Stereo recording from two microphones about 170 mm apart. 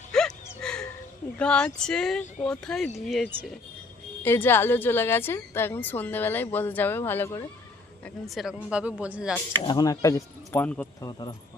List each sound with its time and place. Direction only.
0.1 s a sound: 5° left (ahead or behind)
1.4 s speech: 5° left (ahead or behind)
4.2 s a woman's voice: 15° left (ahead or behind)
8.0 s a man's voice: centre (ahead or behind)
9.6 s speech: 20° left (ahead or behind)
11.0 s speech: 25° left (ahead or behind)